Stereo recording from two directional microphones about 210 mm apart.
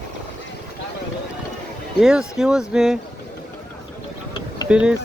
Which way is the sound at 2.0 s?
5° right (ahead or behind).